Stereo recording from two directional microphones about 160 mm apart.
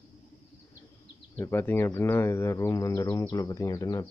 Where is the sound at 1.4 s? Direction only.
15° left (ahead or behind).